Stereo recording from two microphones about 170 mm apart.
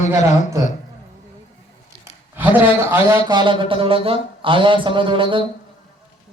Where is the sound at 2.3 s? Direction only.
10° right (ahead or behind).